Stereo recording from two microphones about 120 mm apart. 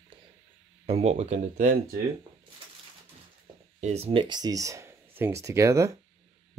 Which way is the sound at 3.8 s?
60° right (ahead or behind).